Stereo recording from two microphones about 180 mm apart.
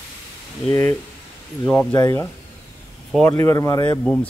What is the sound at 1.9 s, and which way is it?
Speech, 15° left (ahead or behind).